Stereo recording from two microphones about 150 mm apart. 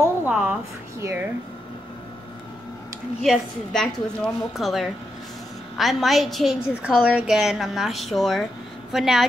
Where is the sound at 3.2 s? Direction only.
5° left (ahead or behind).